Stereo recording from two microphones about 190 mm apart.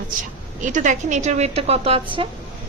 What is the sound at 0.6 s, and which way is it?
A woman's voice, 40° right (ahead or behind).